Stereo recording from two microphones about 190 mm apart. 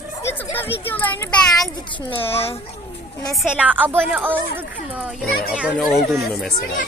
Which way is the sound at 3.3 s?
5° right (ahead or behind).